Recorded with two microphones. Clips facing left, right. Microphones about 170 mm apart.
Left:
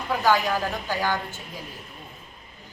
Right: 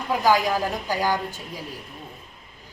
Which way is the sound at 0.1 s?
10° right (ahead or behind).